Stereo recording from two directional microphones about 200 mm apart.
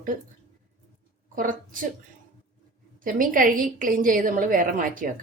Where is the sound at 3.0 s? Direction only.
45° right (ahead or behind).